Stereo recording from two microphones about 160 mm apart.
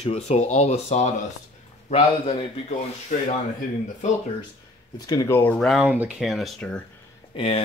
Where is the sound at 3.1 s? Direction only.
50° left (ahead or behind).